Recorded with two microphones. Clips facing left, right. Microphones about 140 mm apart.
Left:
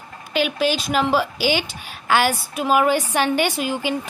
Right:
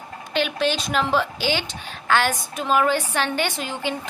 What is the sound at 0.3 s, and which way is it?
A woman's voice, 5° left (ahead or behind).